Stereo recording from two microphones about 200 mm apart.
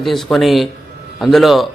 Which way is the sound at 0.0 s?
Centre (ahead or behind).